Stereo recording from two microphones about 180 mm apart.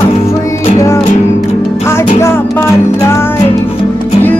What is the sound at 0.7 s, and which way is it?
Music, 15° left (ahead or behind).